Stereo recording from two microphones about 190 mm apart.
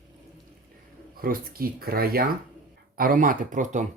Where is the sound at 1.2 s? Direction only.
50° right (ahead or behind).